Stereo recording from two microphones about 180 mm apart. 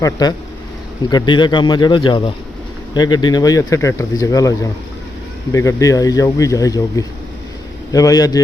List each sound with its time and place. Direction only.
0.0 s speech: 20° left (ahead or behind)